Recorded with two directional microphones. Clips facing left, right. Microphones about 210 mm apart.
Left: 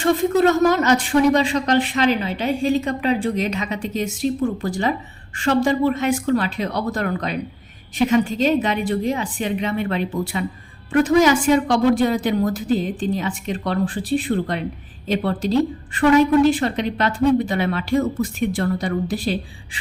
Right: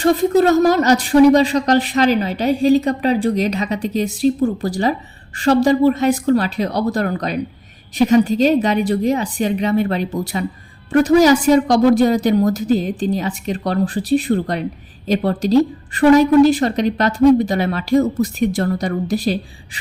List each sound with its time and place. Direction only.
0.0 s speech: 40° right (ahead or behind)